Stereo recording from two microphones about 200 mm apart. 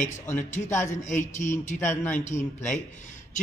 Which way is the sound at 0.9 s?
35° left (ahead or behind).